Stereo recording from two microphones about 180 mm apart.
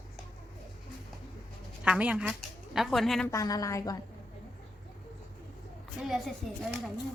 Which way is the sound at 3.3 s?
20° left (ahead or behind).